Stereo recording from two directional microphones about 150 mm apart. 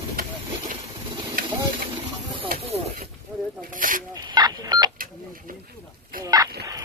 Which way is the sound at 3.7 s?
65° right (ahead or behind).